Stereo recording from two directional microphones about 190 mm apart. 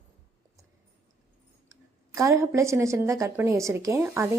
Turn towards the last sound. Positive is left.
turn(degrees=-15)  # may be behind; listen again after turning